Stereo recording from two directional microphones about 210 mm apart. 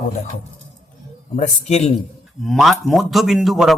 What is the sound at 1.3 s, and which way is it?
Speech, 30° left (ahead or behind).